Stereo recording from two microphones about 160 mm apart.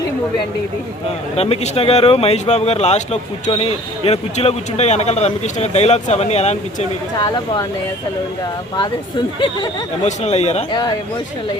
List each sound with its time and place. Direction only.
1.4 s speech: 40° left (ahead or behind)
7.2 s speech: 25° left (ahead or behind)
10.0 s speech: 45° left (ahead or behind)
10.7 s speech: 25° left (ahead or behind)